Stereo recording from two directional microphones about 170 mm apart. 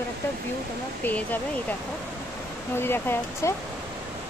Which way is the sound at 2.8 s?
15° left (ahead or behind).